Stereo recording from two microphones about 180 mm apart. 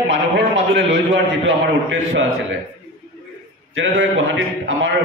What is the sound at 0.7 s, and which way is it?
A man's voice, 90° right.